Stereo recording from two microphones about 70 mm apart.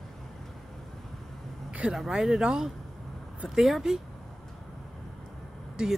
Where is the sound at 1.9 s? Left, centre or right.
Centre.